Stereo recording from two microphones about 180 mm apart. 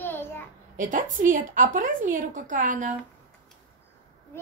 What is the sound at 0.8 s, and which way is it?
A woman's voice, 50° right (ahead or behind).